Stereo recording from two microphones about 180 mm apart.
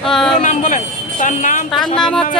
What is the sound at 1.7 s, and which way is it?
Speech, centre (ahead or behind).